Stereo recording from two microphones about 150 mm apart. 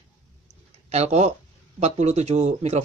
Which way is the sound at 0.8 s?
45° right (ahead or behind).